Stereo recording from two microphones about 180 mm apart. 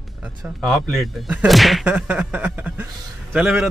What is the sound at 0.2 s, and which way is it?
Speech, 5° right (ahead or behind).